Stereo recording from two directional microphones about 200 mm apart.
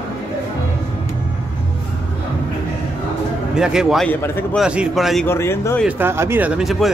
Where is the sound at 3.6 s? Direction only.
5° right (ahead or behind).